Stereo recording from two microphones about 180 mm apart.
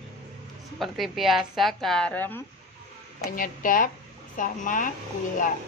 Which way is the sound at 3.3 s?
50° left (ahead or behind).